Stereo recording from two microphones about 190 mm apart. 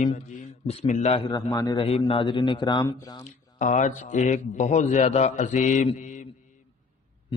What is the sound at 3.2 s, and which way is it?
A man's voice, 40° left (ahead or behind).